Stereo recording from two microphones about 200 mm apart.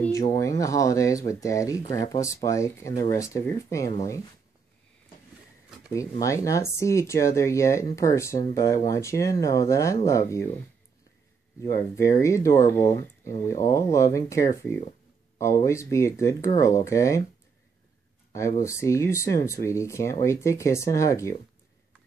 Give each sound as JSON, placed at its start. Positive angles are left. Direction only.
{"t": 0.0, "sound": "speech", "side_deg": 15}
{"t": 5.9, "sound": "speech", "side_deg": 15}
{"t": 11.6, "sound": "speech", "side_deg": 20}
{"t": 18.6, "sound": "speech", "side_deg": 15}